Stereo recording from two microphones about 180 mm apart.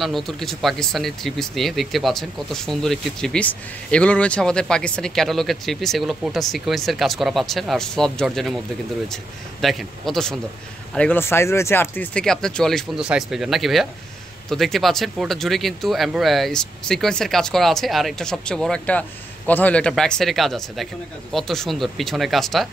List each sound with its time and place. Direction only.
0.0 s speech: centre (ahead or behind)